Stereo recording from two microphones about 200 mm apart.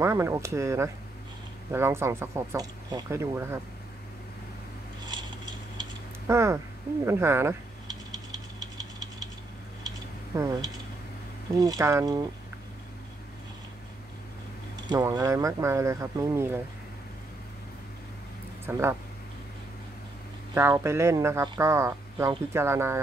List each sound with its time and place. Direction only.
0.0 s speech: 15° right (ahead or behind)
5.0 s a sound: 20° right (ahead or behind)
7.1 s speech: 10° right (ahead or behind)
9.8 s a sound: 15° right (ahead or behind)
11.5 s speech: 20° right (ahead or behind)
14.9 s speech: 20° right (ahead or behind)
18.7 s speech: 10° right (ahead or behind)
20.5 s speech: 10° right (ahead or behind)